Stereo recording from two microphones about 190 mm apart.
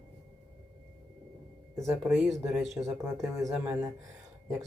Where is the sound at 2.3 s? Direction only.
15° right (ahead or behind).